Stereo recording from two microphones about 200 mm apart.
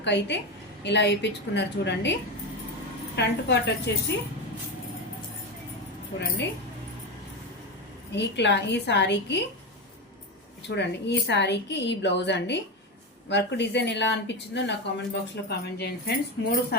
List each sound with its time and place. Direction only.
0.0 s speech: 60° left (ahead or behind)
3.2 s speech: 60° left (ahead or behind)
6.1 s speech: 60° left (ahead or behind)
8.1 s speech: 60° left (ahead or behind)
10.7 s speech: 60° left (ahead or behind)